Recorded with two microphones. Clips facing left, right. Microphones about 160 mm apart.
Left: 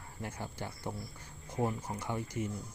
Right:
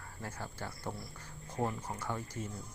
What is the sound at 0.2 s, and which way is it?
Speech, 15° left (ahead or behind).